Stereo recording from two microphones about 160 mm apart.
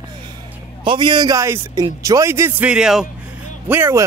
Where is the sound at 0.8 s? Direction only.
30° right (ahead or behind); by 3.0 s 5° right (ahead or behind).